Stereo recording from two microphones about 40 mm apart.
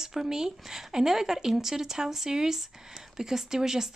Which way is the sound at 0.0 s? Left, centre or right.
Centre.